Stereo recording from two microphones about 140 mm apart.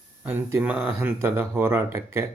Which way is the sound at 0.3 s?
15° right (ahead or behind).